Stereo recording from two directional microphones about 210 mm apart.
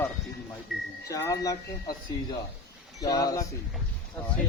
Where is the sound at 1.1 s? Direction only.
15° left (ahead or behind).